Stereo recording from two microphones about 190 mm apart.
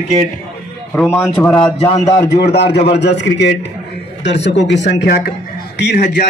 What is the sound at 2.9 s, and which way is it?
A man's voice, 65° left (ahead or behind).